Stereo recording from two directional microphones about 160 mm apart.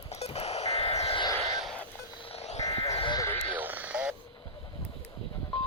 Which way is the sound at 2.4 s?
45° left (ahead or behind).